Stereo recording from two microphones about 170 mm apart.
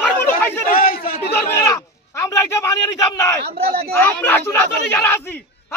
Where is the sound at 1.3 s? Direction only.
15° left (ahead or behind).